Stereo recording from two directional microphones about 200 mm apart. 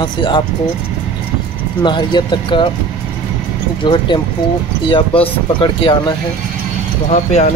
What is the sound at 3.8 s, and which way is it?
Speech, 25° left (ahead or behind).